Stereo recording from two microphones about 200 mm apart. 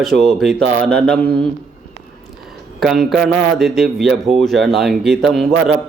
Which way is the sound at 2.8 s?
Centre (ahead or behind).